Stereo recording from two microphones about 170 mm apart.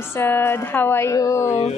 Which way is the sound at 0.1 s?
15° left (ahead or behind).